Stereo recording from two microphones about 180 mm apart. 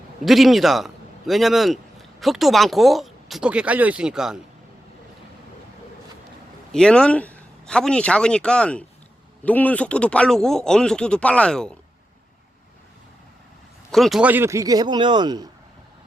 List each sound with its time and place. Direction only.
0.3 s speech: centre (ahead or behind)
6.7 s speech: 5° left (ahead or behind)
13.9 s speech: centre (ahead or behind); by 15.4 s 25° right (ahead or behind)